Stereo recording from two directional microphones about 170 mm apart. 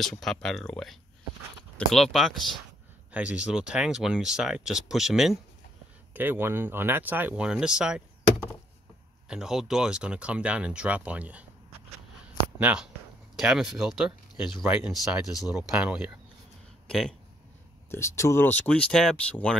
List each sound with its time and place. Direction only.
0.0 s speech: centre (ahead or behind)
9.3 s speech: 5° right (ahead or behind)
12.5 s speech: 5° right (ahead or behind)
14.3 s speech: 30° left (ahead or behind)
14.6 s speech: 5° right (ahead or behind)
17.8 s speech: 15° left (ahead or behind)